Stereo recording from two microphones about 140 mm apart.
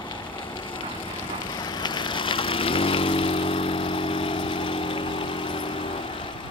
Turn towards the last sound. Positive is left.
turn(degrees=35)  # may be behind; listen again after turning